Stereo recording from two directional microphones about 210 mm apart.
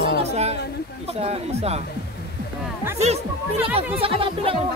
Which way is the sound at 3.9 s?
25° right (ahead or behind).